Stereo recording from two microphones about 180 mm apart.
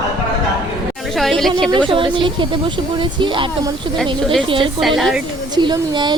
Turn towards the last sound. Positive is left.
turn(degrees=-25)  # may be behind; listen again after turning